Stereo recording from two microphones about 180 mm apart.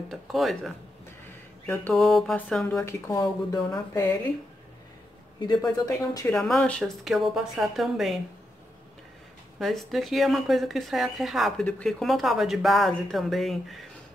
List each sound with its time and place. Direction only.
0.1 s speech: centre (ahead or behind)
2.0 s speech: centre (ahead or behind)
2.7 s speech: 15° left (ahead or behind)
5.4 s speech: 25° left (ahead or behind)
6.3 s speech: 5° left (ahead or behind)
9.6 s speech: centre (ahead or behind)